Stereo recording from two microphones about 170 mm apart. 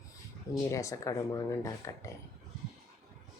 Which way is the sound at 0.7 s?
20° left (ahead or behind).